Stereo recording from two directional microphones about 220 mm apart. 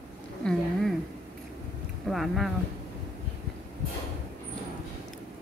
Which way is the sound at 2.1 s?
Centre (ahead or behind).